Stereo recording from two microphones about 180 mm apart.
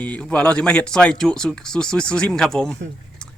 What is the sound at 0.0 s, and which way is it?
Speech, 10° left (ahead or behind).